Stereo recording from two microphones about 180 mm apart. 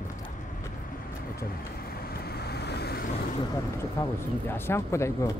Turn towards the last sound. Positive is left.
turn(degrees=15)  # may be behind; listen again after turning